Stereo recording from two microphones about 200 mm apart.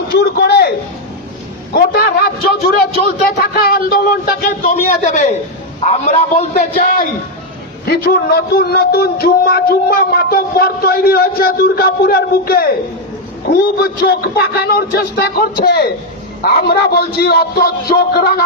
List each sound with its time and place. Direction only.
0.1 s a sound: 55° left (ahead or behind)
1.7 s a man's voice: 50° left (ahead or behind)
3.5 s a man's voice: 50° left (ahead or behind)
6.7 s a man's voice: 45° left (ahead or behind)